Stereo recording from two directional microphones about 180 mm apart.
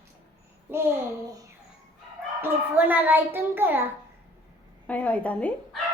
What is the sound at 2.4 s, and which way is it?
A child's voice, 10° right (ahead or behind).